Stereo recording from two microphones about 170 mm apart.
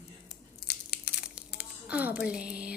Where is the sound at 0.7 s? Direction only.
75° left (ahead or behind).